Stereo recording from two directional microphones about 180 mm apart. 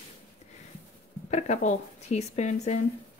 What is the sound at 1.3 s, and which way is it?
Speech, 40° left (ahead or behind).